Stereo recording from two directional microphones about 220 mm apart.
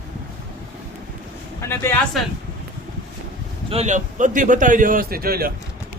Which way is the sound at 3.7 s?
30° right (ahead or behind).